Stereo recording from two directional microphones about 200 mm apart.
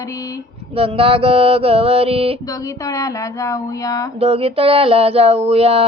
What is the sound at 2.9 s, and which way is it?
Speech, 15° left (ahead or behind).